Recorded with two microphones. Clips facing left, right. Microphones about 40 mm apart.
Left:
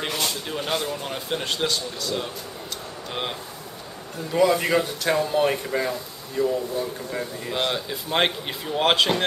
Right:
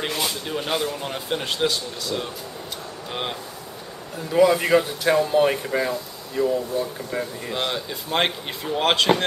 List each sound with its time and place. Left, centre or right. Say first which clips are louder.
0.0 s speech: right 1 dB; centre